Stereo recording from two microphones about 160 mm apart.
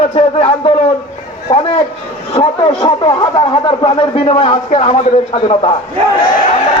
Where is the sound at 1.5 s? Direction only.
30° left (ahead or behind).